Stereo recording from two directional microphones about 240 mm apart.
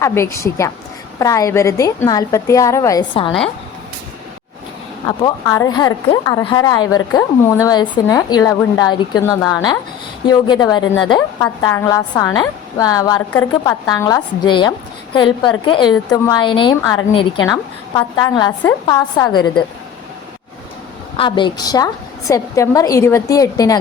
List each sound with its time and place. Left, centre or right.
0.0 s a woman's voice: centre
5.0 s a woman's voice: centre
21.2 s a woman's voice: centre